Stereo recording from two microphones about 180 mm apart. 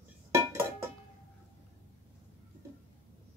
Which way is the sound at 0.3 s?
15° right (ahead or behind).